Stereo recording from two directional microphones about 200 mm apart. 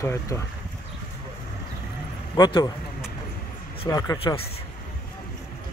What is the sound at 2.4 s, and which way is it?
Speech, 20° left (ahead or behind).